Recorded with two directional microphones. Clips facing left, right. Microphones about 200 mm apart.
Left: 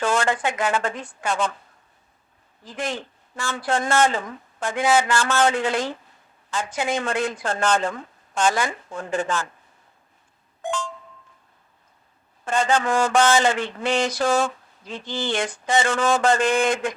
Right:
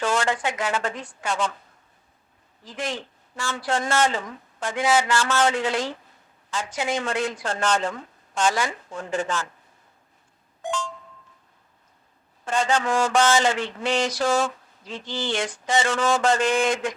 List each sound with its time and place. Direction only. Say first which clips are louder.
0.0 s speech: left 2 dB; 55° left (ahead or behind)
2.6 s speech: left 2 dB; 55° left (ahead or behind)
10.6 s a sound: left 1 dB; 55° left (ahead or behind)
12.5 s speech: left 2 dB; 55° left (ahead or behind)